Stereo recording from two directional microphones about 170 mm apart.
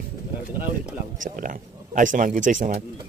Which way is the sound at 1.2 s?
50° right (ahead or behind).